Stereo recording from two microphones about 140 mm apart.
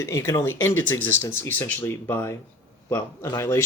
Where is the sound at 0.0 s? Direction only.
20° left (ahead or behind).